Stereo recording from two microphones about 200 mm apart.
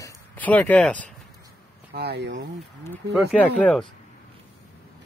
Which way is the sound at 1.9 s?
55° right (ahead or behind).